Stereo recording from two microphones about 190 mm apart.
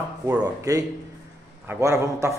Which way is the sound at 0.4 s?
20° right (ahead or behind).